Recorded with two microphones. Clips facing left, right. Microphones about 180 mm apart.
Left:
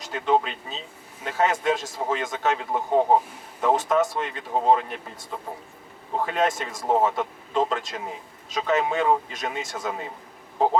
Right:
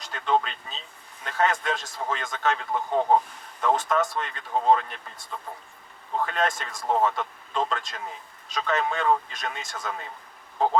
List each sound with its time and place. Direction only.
0.0 s speech: 10° left (ahead or behind)